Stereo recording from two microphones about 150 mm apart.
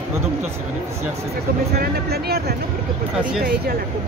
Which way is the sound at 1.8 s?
90° right.